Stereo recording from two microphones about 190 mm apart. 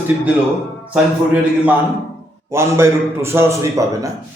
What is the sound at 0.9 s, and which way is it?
A man's voice, 5° right (ahead or behind).